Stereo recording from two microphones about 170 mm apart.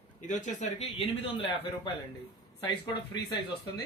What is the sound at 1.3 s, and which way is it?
Speech, 30° left (ahead or behind).